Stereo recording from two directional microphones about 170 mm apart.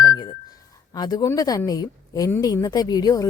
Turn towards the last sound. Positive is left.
turn(degrees=25)  # may be behind; listen again after turning